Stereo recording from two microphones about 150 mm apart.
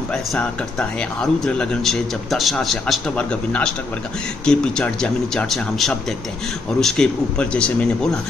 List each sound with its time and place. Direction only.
0.1 s speech: 5° left (ahead or behind)